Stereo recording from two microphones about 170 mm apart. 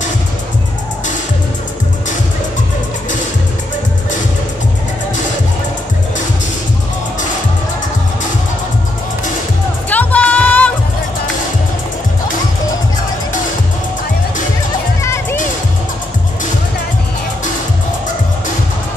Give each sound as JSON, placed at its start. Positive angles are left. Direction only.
{"t": 9.8, "sound": "music", "side_deg": 10}
{"t": 15.0, "sound": "music", "side_deg": 15}